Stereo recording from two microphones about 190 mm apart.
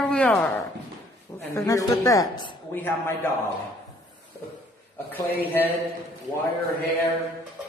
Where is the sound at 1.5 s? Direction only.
15° left (ahead or behind).